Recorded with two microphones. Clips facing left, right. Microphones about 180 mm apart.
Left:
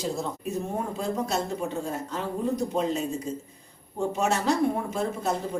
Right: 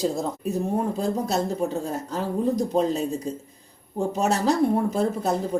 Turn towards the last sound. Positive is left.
turn(degrees=-35)  # may be behind; listen again after turning